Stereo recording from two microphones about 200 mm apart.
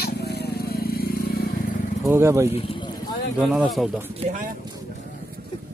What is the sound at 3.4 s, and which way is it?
Speech, 5° right (ahead or behind).